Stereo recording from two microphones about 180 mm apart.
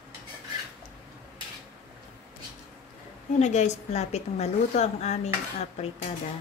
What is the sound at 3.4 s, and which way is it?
A woman's voice, 40° left (ahead or behind).